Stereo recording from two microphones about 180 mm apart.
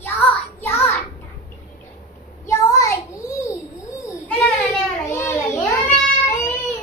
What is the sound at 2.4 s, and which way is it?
Child singing, 20° left (ahead or behind).